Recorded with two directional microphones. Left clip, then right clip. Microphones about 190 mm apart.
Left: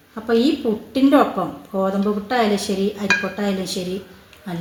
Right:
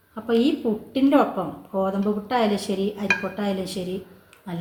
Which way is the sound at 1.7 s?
30° left (ahead or behind).